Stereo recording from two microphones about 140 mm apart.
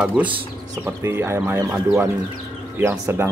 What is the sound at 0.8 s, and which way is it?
Speech, 20° right (ahead or behind).